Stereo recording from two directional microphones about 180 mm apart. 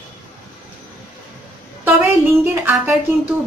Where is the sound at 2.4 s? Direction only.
10° right (ahead or behind).